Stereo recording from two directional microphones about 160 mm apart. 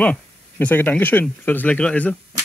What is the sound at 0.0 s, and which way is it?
Speech, 10° left (ahead or behind).